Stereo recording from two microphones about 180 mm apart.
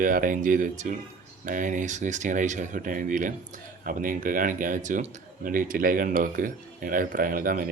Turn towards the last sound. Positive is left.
turn(degrees=-50)  # may be behind; listen again after turning